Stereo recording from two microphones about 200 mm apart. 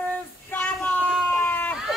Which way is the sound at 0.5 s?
5° left (ahead or behind).